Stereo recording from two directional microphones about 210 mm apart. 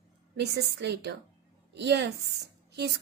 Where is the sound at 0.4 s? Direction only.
55° right (ahead or behind).